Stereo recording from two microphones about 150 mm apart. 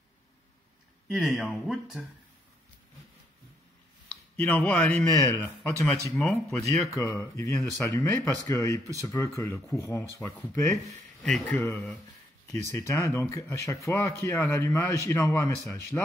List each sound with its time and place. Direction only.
1.0 s speech: centre (ahead or behind)
4.1 s speech: 5° left (ahead or behind)
6.0 s speech: centre (ahead or behind)
6.9 s speech: 20° left (ahead or behind)
11.2 s speech: 10° left (ahead or behind)